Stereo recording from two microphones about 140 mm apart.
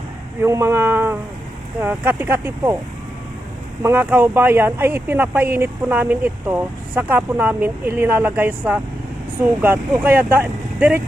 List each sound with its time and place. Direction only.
0.4 s speech: 20° right (ahead or behind)
3.8 s speech: 15° right (ahead or behind)